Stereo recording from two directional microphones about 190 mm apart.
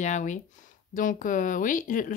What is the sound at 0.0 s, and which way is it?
Speech, 40° left (ahead or behind).